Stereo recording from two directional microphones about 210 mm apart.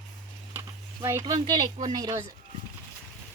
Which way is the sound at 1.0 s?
15° right (ahead or behind).